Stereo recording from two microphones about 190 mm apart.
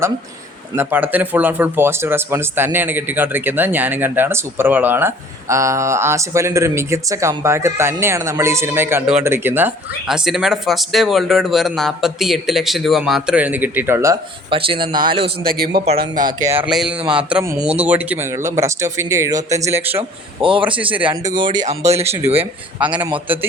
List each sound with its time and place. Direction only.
0.8 s speech: 10° right (ahead or behind)
14.5 s speech: 25° right (ahead or behind)
15.4 s speech: 55° right (ahead or behind)
16.2 s speech: 15° right (ahead or behind)
16.6 s speech: 5° right (ahead or behind)
20.0 s speech: 25° right (ahead or behind)
22.8 s speech: 5° right (ahead or behind)